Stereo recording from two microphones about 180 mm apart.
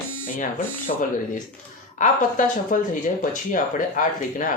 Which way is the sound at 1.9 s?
45° left (ahead or behind).